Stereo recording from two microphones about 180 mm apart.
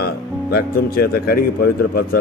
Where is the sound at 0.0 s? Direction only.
60° left (ahead or behind).